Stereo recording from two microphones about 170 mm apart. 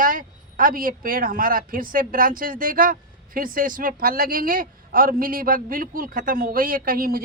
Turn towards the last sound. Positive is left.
turn(degrees=-60)  # may be behind; listen again after turning